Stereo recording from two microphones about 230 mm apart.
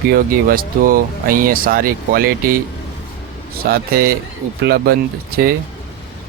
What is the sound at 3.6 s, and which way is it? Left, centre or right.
Speech, right.